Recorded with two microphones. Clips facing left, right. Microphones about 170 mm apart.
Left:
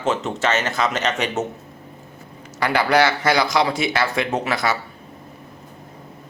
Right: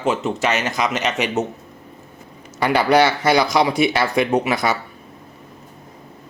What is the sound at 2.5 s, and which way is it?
A man's voice, 20° right (ahead or behind).